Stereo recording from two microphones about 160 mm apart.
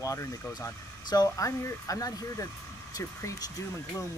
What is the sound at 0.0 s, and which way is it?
Speech, 20° left (ahead or behind).